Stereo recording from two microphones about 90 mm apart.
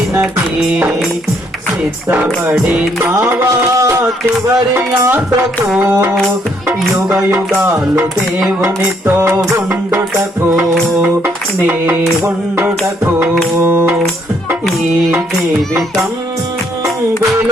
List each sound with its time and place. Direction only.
2.5 s music: 10° right (ahead or behind)
3.0 s music: 25° right (ahead or behind)
7.3 s music: 20° right (ahead or behind)
11.6 s music: 20° right (ahead or behind)
13.1 s music: 20° right (ahead or behind)